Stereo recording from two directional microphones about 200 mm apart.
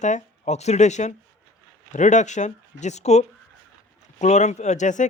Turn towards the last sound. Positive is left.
turn(degrees=40)  # may be behind; listen again after turning